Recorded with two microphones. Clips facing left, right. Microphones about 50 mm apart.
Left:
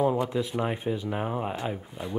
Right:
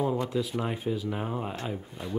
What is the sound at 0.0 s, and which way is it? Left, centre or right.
Speech, centre.